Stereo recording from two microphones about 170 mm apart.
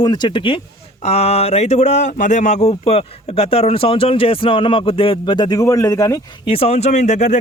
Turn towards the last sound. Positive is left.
turn(degrees=45)  # may be behind; listen again after turning